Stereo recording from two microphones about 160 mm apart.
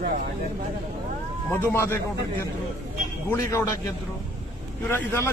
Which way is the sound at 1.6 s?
15° left (ahead or behind).